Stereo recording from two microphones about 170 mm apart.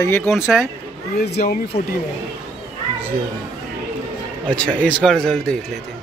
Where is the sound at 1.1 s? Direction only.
70° left (ahead or behind).